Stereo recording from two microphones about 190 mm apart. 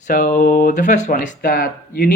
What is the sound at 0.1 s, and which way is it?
Speech, 45° left (ahead or behind).